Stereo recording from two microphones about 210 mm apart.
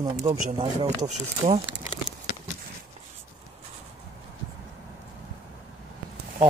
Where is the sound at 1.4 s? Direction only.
30° right (ahead or behind).